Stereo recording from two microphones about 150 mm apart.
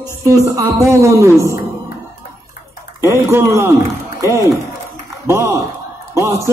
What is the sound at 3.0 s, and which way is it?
Speech, 20° right (ahead or behind).